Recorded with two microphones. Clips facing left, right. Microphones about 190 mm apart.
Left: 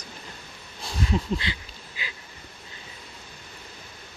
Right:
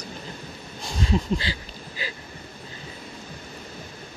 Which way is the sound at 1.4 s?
35° right (ahead or behind).